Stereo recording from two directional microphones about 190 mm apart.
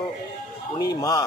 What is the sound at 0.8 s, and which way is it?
Speech, 20° left (ahead or behind).